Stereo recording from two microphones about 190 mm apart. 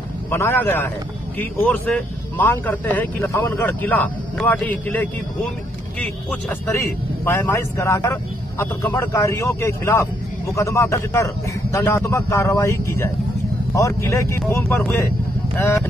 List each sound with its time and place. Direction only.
0.3 s speech: 10° left (ahead or behind)
6.7 s speech: 15° left (ahead or behind)